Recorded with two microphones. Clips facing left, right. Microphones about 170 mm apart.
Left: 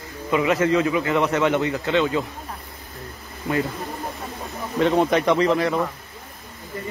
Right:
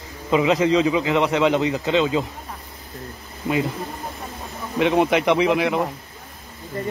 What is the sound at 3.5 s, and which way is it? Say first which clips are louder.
Speech: right 1 dB; 20° right (ahead or behind).